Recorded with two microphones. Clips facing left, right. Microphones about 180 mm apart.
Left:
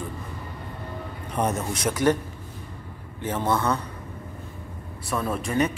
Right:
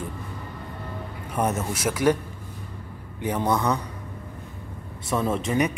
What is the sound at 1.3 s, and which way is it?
Speech, 5° right (ahead or behind).